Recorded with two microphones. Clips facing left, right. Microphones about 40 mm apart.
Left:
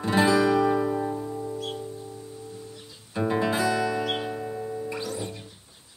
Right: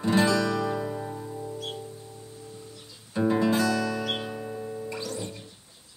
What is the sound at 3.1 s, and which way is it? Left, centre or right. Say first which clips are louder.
Music: right 1 dB; centre.